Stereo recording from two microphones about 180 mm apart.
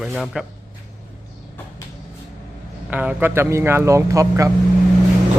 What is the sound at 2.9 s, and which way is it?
Speech, 10° right (ahead or behind).